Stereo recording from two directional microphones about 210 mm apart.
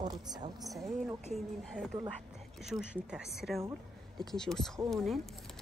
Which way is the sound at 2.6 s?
Centre (ahead or behind).